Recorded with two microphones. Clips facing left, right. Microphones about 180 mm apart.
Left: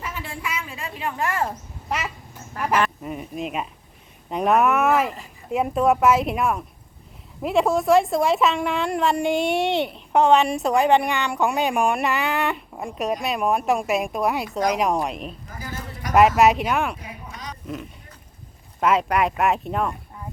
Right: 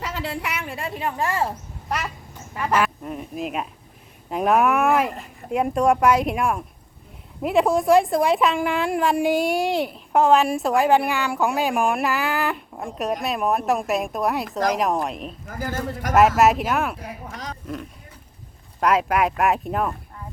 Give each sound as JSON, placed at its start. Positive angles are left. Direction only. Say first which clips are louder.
{"t": 0.0, "sound": "a woman's voice", "louder": "right 4 dB", "side_deg": -90}
{"t": 1.1, "sound": "speech", "louder": "even", "side_deg": -25}
{"t": 2.7, "sound": "a woman's voice", "louder": "even", "side_deg": 0}
{"t": 15.6, "sound": "a man's voice", "louder": "right 7 dB", "side_deg": -50}
{"t": 16.4, "sound": "a woman's voice", "louder": "even", "side_deg": 0}
{"t": 17.0, "sound": "a sound", "louder": "right 3 dB", "side_deg": -50}
{"t": 18.8, "sound": "a woman's voice", "louder": "even", "side_deg": 0}